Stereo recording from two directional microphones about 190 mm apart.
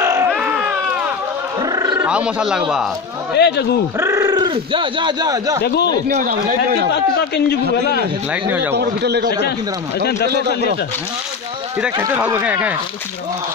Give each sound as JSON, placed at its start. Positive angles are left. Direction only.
{"t": 0.0, "sound": "baby cry", "side_deg": -15}
{"t": 0.3, "sound": "baby cry", "side_deg": -5}
{"t": 1.6, "sound": "a sound", "side_deg": -20}
{"t": 2.0, "sound": "speech", "side_deg": -5}
{"t": 3.3, "sound": "a man's voice", "side_deg": 60}
{"t": 4.0, "sound": "speech", "side_deg": -15}
{"t": 5.6, "sound": "a man's voice", "side_deg": 60}
{"t": 6.0, "sound": "speech", "side_deg": -45}
{"t": 6.9, "sound": "a man's voice", "side_deg": 60}
{"t": 8.3, "sound": "speech", "side_deg": -10}
{"t": 11.8, "sound": "speech", "side_deg": -10}